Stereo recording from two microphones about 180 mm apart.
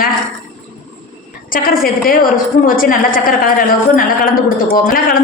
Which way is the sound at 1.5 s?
50° left (ahead or behind).